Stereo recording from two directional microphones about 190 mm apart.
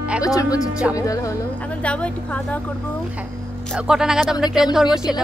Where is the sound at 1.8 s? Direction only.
5° left (ahead or behind).